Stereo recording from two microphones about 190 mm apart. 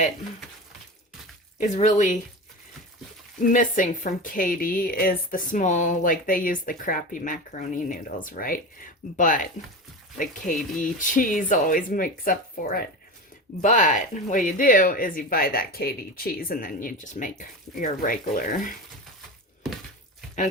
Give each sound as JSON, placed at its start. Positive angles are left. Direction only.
{"t": 1.5, "sound": "speech", "side_deg": 40}
{"t": 3.5, "sound": "a woman's voice", "side_deg": 40}